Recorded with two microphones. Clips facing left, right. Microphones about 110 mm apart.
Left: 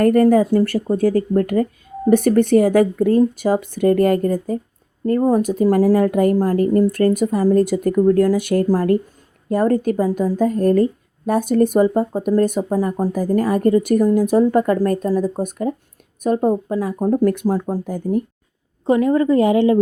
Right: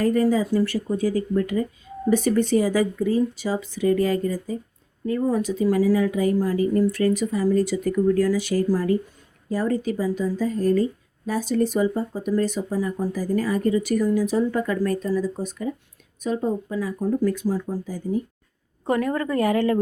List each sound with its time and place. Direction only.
0.0 s speech: 55° left (ahead or behind)
18.9 s a woman's voice: 20° left (ahead or behind)